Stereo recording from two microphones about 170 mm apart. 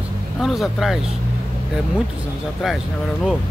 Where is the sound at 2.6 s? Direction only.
Centre (ahead or behind).